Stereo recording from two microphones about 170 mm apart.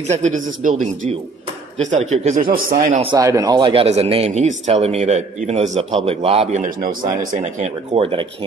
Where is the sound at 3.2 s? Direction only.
20° right (ahead or behind); by 7.1 s 55° right (ahead or behind).